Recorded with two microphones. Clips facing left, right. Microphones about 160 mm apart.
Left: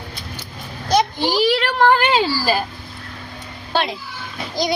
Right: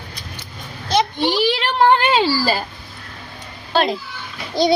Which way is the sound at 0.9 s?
25° right (ahead or behind).